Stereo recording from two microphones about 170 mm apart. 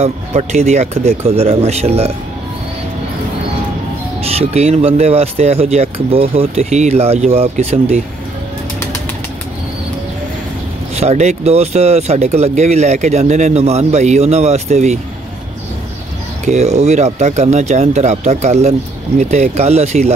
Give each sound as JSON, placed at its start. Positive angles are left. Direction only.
{"t": 0.0, "sound": "speech", "side_deg": -40}
{"t": 4.2, "sound": "speech", "side_deg": -40}
{"t": 11.0, "sound": "speech", "side_deg": -40}
{"t": 16.4, "sound": "speech", "side_deg": -40}